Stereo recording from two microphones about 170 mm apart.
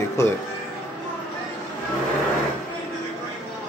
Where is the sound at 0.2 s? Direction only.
15° left (ahead or behind).